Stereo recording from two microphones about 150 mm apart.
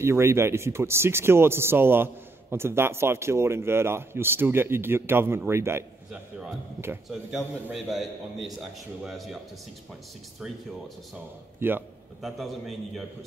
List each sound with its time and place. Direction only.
0.0 s speech: 15° right (ahead or behind)
7.1 s a man's voice: centre (ahead or behind)
11.6 s speech: 15° right (ahead or behind)
12.2 s a man's voice: centre (ahead or behind)